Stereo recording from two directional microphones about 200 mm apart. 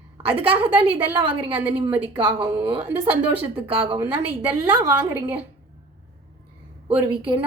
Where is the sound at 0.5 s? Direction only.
10° right (ahead or behind).